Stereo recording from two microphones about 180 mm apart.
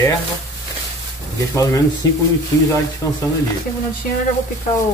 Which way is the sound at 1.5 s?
20° left (ahead or behind).